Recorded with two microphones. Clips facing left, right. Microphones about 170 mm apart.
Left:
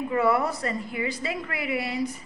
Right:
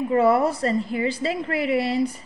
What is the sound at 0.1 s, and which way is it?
A woman's voice, 30° right (ahead or behind).